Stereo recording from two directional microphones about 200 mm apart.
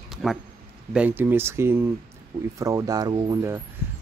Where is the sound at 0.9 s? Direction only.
10° right (ahead or behind).